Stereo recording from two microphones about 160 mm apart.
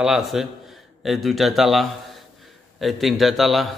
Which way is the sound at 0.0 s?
Centre (ahead or behind).